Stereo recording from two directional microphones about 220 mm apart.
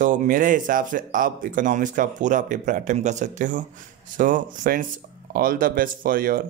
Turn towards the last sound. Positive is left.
turn(degrees=-40)  # may be behind; listen again after turning